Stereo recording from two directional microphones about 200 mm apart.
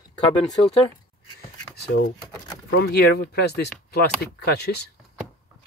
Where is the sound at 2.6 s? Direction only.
50° left (ahead or behind).